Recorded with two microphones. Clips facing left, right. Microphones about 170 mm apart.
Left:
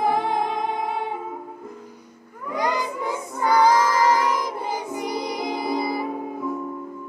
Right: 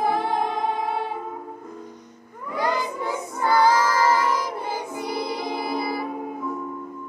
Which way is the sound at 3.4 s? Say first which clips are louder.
Left 1 dB; 20° left (ahead or behind).